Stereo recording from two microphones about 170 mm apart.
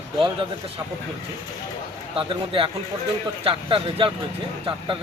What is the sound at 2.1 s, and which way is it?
A man's voice, 30° right (ahead or behind).